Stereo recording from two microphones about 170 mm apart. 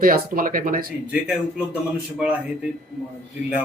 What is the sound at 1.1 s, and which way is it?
Speech, 5° right (ahead or behind).